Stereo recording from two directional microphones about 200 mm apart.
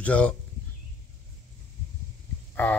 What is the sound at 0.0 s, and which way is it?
Speech, 5° left (ahead or behind).